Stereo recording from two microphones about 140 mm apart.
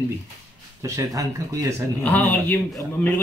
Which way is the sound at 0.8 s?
25° right (ahead or behind).